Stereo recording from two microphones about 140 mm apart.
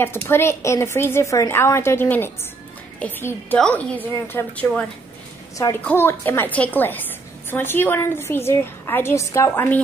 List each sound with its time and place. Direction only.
0.0 s a woman's voice: 15° left (ahead or behind)
5.9 s a woman's voice: 15° left (ahead or behind)